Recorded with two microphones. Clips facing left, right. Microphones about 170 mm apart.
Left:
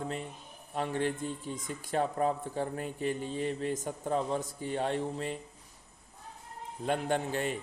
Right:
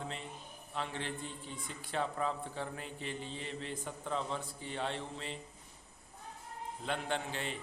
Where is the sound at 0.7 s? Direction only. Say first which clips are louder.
Left 8 dB; 45° left (ahead or behind).